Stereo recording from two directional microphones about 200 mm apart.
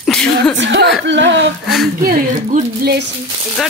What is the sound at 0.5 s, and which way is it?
Speech, 65° right (ahead or behind).